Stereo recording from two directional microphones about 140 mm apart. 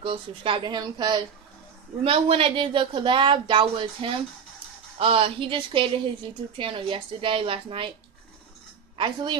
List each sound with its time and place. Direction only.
0.0 s speech: 40° right (ahead or behind)
2.0 s speech: 45° right (ahead or behind)
8.9 s speech: 35° right (ahead or behind)